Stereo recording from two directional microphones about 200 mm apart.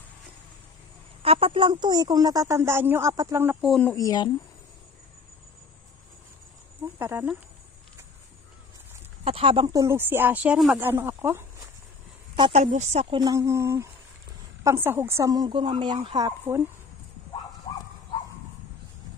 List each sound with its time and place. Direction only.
1.2 s a woman's voice: 30° right (ahead or behind)
3.6 s speech: centre (ahead or behind)
3.9 s speech: 20° left (ahead or behind)
7.0 s speech: 10° right (ahead or behind)
9.2 s speech: 25° right (ahead or behind); by 11.4 s 10° right (ahead or behind)
12.4 s a woman's voice: 25° right (ahead or behind)